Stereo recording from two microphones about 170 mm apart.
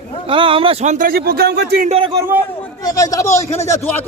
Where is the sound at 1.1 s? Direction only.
65° right (ahead or behind).